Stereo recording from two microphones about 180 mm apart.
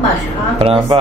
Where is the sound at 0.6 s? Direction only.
30° right (ahead or behind).